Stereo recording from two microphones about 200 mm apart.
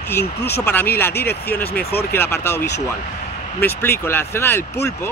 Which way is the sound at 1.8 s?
50° left (ahead or behind).